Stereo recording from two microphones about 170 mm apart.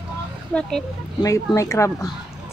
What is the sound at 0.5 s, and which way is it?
Speech, 10° left (ahead or behind).